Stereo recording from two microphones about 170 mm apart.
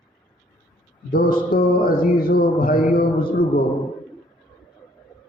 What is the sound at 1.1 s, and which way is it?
A man's voice, 55° left (ahead or behind).